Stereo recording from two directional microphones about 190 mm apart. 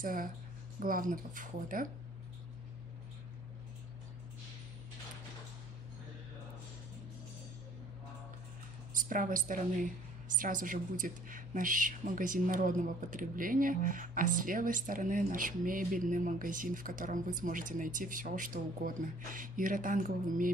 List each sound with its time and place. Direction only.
0.0 s a woman's voice: 45° right (ahead or behind)
8.9 s a woman's voice: 45° right (ahead or behind)